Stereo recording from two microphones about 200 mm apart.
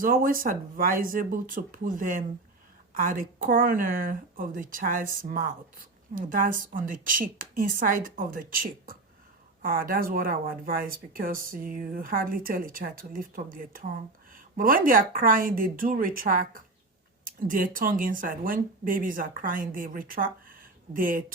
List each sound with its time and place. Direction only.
0.0 s speech: 45° right (ahead or behind)